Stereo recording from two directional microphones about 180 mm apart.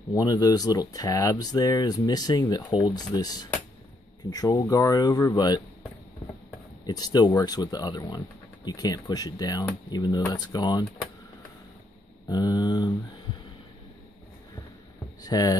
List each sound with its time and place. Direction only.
0.1 s speech: 20° left (ahead or behind)
6.9 s speech: 20° left (ahead or behind)
12.3 s speech: 25° left (ahead or behind)
15.2 s speech: 20° left (ahead or behind)